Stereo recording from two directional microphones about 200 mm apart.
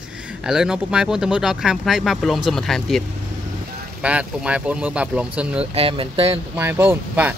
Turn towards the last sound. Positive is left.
turn(degrees=-10)  # may be behind; listen again after turning